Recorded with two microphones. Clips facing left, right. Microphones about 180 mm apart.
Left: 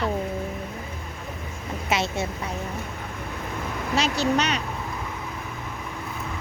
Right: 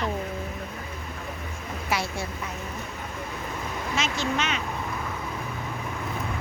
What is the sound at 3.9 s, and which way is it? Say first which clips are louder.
Speech: left 6 dB; 35° left (ahead or behind).